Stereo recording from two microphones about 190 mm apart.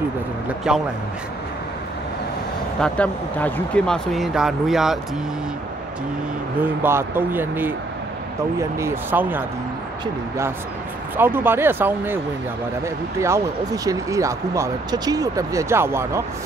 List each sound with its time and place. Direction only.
0.7 s speech: 5° right (ahead or behind)
2.8 s speech: 5° left (ahead or behind)
6.6 s speech: 10° right (ahead or behind)
11.1 s speech: 10° right (ahead or behind)